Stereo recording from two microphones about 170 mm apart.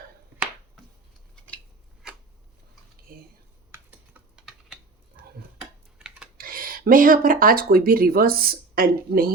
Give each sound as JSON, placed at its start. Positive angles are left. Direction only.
{"t": 3.1, "sound": "speech", "side_deg": -55}
{"t": 5.5, "sound": "typing", "side_deg": -5}
{"t": 6.3, "sound": "speech", "side_deg": -60}